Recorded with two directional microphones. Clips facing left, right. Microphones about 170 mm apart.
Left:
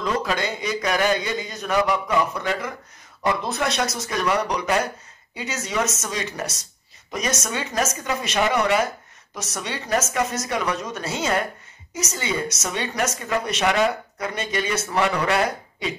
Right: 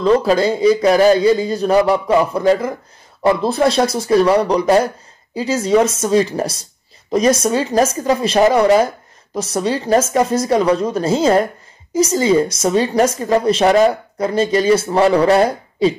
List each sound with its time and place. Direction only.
0.0 s a woman's voice: 35° right (ahead or behind)